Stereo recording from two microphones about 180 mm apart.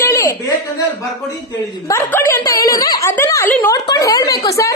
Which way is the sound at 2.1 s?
15° left (ahead or behind).